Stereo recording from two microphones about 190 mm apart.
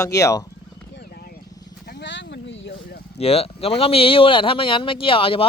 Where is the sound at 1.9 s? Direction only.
65° left (ahead or behind).